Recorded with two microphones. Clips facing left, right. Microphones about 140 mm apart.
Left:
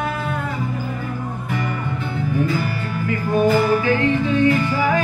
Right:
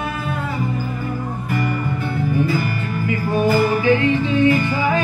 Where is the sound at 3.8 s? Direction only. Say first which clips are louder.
Right 2 dB; 20° right (ahead or behind).